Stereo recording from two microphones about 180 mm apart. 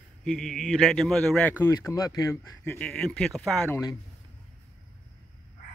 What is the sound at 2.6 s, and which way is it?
A man's voice, 5° left (ahead or behind).